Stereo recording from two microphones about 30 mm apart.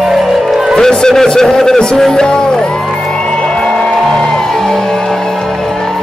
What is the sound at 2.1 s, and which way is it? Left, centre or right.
Music, left.